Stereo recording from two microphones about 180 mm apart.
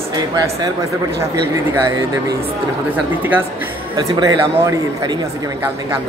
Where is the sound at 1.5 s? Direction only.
20° right (ahead or behind).